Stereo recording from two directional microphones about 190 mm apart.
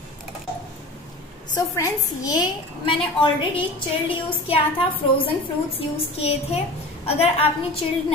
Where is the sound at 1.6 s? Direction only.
20° left (ahead or behind).